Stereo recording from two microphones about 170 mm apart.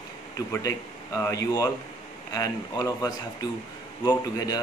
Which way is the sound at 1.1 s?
20° left (ahead or behind).